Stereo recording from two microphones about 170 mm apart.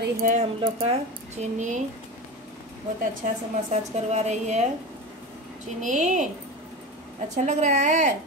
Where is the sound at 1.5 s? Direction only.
45° right (ahead or behind).